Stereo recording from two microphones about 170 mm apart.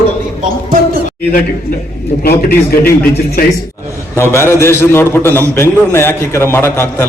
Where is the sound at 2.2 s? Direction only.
65° left (ahead or behind).